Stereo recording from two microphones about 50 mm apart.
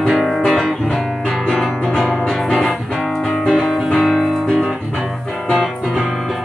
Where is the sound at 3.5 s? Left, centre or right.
Centre.